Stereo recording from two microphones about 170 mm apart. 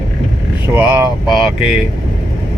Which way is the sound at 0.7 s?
10° right (ahead or behind).